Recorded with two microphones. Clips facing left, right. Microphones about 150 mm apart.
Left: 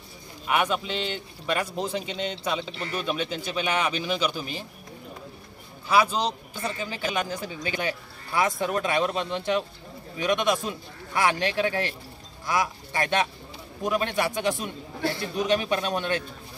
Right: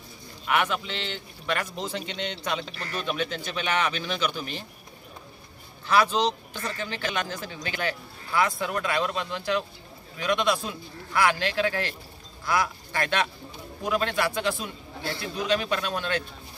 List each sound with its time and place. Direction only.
0.5 s speech: 10° left (ahead or behind)
2.7 s speech: 20° left (ahead or behind)
3.1 s speech: 10° left (ahead or behind)
5.9 s speech: 10° left (ahead or behind)